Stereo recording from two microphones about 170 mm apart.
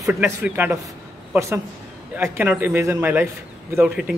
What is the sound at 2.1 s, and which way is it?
Speech, 10° right (ahead or behind).